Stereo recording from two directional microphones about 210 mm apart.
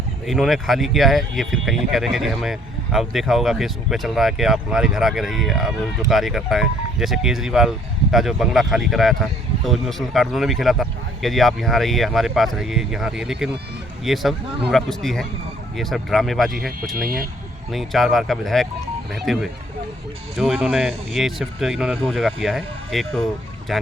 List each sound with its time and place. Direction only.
0.3 s speech: centre (ahead or behind)
16.5 s speech: 45° right (ahead or behind)
17.7 s speech: centre (ahead or behind)